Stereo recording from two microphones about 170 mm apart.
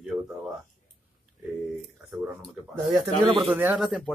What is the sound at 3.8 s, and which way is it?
Speech, centre (ahead or behind).